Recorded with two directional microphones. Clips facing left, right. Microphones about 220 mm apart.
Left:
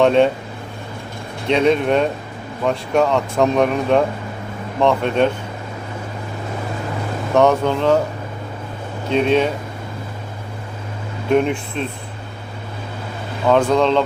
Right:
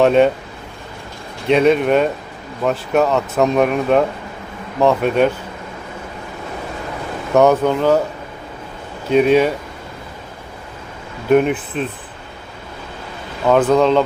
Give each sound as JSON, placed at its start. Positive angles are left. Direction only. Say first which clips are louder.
{"t": 0.0, "sound": "speech", "louder": "right 1 dB", "side_deg": -5}
{"t": 1.5, "sound": "speech", "louder": "right 2 dB", "side_deg": -5}
{"t": 7.3, "sound": "speech", "louder": "right 2 dB", "side_deg": -5}
{"t": 9.0, "sound": "speech", "louder": "right 4 dB", "side_deg": -5}
{"t": 11.3, "sound": "speech", "louder": "right 3 dB", "side_deg": -5}
{"t": 13.5, "sound": "speech", "louder": "right 2 dB", "side_deg": -5}